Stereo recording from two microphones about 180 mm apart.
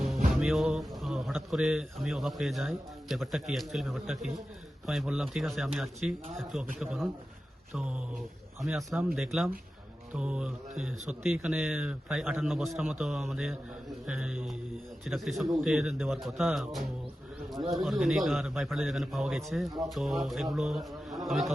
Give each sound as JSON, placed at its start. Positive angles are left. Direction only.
{"t": 0.0, "sound": "a man's voice", "side_deg": 0}